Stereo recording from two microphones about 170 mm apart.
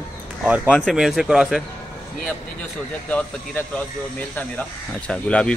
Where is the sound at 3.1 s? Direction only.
5° left (ahead or behind).